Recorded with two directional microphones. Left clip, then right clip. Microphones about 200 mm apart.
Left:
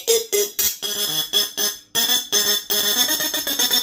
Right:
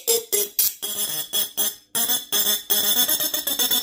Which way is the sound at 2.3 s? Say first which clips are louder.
Left 4 dB; 15° right (ahead or behind).